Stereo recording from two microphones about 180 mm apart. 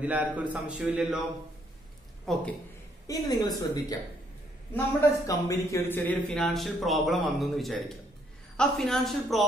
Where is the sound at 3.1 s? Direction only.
20° left (ahead or behind).